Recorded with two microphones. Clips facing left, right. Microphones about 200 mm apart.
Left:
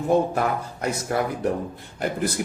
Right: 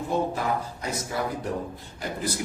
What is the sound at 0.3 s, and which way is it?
Speech, 60° left (ahead or behind).